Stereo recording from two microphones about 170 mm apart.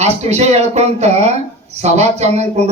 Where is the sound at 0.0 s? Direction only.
40° right (ahead or behind).